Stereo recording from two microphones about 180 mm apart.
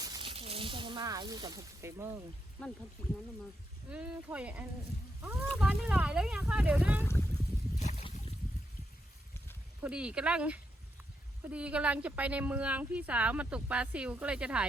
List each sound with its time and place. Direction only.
0.0 s a sound: 25° right (ahead or behind)
3.8 s speech: 5° right (ahead or behind)
7.0 s speech: 15° left (ahead or behind)
7.8 s boat: 35° left (ahead or behind)
9.8 s speech: 5° right (ahead or behind)